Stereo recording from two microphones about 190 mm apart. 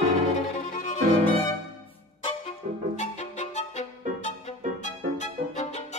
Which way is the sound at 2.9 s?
35° left (ahead or behind).